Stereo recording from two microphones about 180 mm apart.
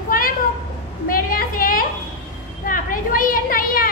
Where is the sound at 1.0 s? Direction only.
50° left (ahead or behind).